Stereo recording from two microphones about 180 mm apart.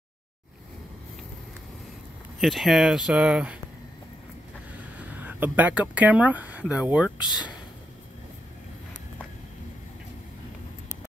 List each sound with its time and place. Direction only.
2.4 s speech: centre (ahead or behind)
4.7 s speech: 10° right (ahead or behind)
7.2 s speech: 25° left (ahead or behind)